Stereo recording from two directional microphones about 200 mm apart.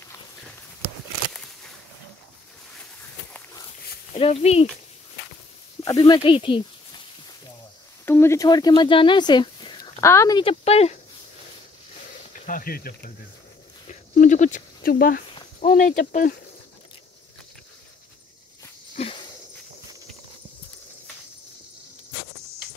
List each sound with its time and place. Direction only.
4.2 s speech: 30° left (ahead or behind)
5.9 s speech: 25° left (ahead or behind)
8.0 s speech: 10° left (ahead or behind); by 11.0 s 30° left (ahead or behind)
12.4 s speech: 45° left (ahead or behind)
13.8 s a sound: 40° left (ahead or behind)
15.6 s speech: 40° left (ahead or behind)
18.9 s a sound: 30° left (ahead or behind)